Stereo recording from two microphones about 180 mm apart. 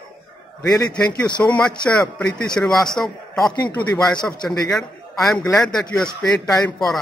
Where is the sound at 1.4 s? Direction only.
5° left (ahead or behind).